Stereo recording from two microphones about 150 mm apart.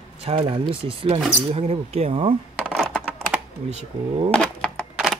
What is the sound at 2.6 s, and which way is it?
Computer keyboard, centre (ahead or behind).